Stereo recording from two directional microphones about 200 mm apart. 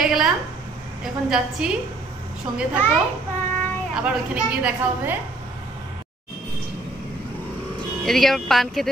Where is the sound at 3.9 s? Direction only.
5° right (ahead or behind).